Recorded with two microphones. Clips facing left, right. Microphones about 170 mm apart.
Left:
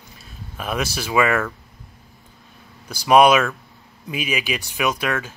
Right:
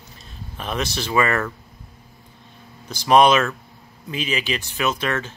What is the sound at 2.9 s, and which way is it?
Speech, 10° left (ahead or behind).